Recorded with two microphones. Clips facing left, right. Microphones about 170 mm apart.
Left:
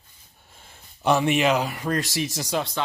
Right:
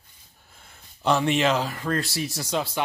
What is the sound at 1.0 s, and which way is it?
Speech, 15° left (ahead or behind).